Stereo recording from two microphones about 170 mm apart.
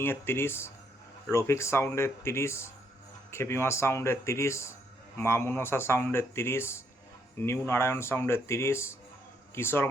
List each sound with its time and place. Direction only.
0.0 s speech: 15° left (ahead or behind)